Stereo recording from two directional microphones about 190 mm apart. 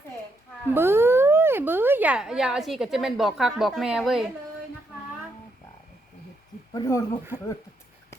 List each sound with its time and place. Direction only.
0.7 s speech: 10° right (ahead or behind)
6.7 s speech: 15° left (ahead or behind)